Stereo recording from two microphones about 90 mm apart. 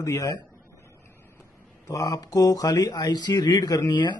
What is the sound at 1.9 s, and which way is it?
Speech, 45° left (ahead or behind).